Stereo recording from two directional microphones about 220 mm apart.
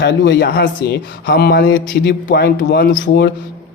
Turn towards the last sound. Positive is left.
turn(degrees=45)  # may be behind; listen again after turning